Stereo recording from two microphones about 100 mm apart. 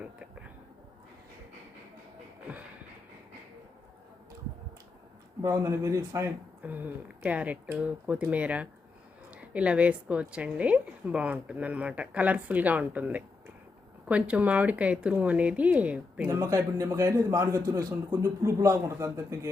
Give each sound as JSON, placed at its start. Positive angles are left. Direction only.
{"t": 0.0, "sound": "a sound", "side_deg": -10}
{"t": 5.4, "sound": "a man's voice", "side_deg": -30}
{"t": 6.6, "sound": "a woman's voice", "side_deg": -15}
{"t": 16.2, "sound": "a man's voice", "side_deg": -30}